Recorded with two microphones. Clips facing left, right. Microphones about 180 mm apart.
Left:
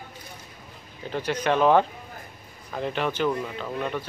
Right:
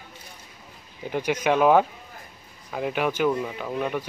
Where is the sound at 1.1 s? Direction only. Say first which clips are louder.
Right 2 dB; 10° right (ahead or behind).